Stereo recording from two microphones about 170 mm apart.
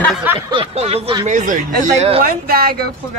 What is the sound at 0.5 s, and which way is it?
Speech, 35° right (ahead or behind).